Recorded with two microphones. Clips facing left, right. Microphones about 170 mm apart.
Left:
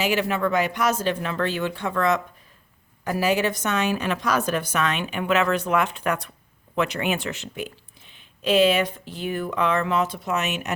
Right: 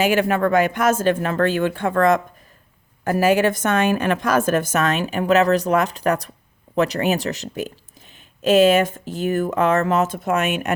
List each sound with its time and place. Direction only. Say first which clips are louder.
0.0 s a woman's voice: right 5 dB; 50° right (ahead or behind)